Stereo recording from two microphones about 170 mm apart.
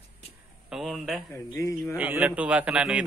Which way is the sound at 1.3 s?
15° left (ahead or behind).